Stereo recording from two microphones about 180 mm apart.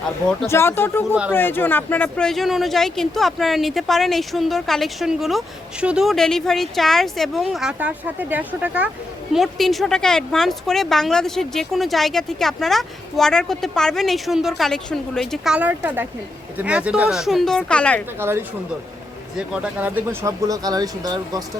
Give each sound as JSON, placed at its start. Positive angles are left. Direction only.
{"t": 0.4, "sound": "speech", "side_deg": 15}
{"t": 18.2, "sound": "speech", "side_deg": -15}